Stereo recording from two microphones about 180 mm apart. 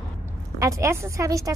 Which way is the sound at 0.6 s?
15° right (ahead or behind).